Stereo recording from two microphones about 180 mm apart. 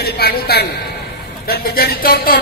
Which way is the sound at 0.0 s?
60° left (ahead or behind).